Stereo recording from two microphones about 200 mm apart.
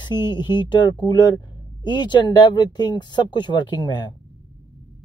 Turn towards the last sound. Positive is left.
turn(degrees=20)  # may be behind; listen again after turning